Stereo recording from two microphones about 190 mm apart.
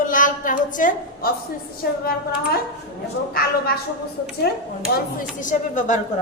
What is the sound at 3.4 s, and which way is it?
Speech, 55° left (ahead or behind).